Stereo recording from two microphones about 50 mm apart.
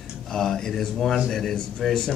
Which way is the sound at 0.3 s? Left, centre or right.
Centre.